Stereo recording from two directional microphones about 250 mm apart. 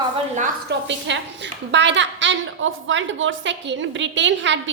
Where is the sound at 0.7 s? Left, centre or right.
Right.